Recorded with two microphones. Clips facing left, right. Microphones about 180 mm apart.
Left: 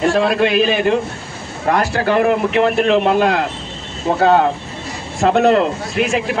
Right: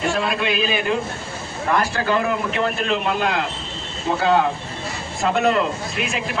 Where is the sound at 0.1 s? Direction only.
60° left (ahead or behind).